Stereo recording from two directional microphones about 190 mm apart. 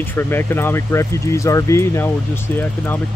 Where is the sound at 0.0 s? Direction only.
10° left (ahead or behind).